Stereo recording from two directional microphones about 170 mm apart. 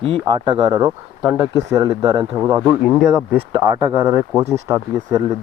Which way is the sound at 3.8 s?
20° right (ahead or behind).